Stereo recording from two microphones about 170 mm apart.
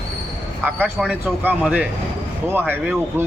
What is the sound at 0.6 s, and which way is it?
Speech, 10° right (ahead or behind).